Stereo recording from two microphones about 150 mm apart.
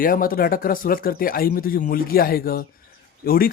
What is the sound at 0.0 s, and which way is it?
Speech, 70° left (ahead or behind).